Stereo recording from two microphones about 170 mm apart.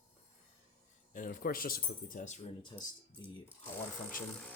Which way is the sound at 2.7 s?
20° left (ahead or behind).